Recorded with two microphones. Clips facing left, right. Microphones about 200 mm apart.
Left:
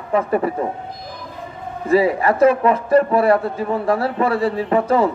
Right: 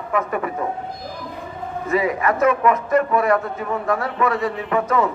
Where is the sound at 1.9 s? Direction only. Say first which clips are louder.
Left 5 dB; 30° left (ahead or behind).